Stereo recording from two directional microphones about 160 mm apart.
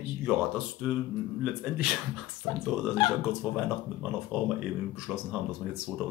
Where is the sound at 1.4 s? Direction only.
5° right (ahead or behind).